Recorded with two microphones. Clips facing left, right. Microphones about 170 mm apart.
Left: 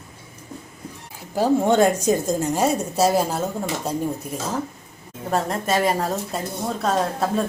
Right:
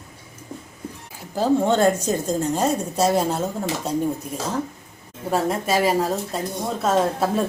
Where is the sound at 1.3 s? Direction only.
10° left (ahead or behind).